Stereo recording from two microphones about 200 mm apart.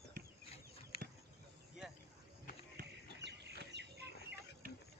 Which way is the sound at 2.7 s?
60° right (ahead or behind).